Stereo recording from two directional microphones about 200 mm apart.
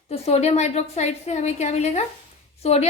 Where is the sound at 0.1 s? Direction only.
30° left (ahead or behind).